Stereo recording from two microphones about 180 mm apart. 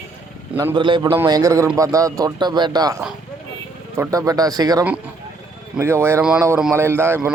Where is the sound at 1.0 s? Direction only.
15° right (ahead or behind).